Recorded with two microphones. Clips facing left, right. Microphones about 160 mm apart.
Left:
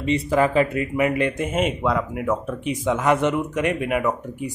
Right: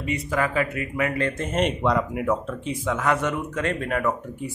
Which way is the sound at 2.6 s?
20° left (ahead or behind).